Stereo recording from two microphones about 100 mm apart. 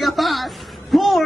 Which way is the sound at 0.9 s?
Centre (ahead or behind).